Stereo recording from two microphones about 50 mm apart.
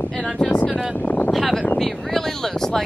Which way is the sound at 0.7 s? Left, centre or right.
Centre.